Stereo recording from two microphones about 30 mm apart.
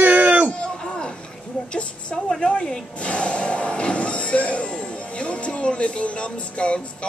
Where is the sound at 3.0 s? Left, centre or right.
Left.